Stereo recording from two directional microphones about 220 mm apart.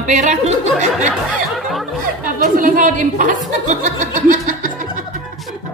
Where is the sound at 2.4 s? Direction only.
35° right (ahead or behind).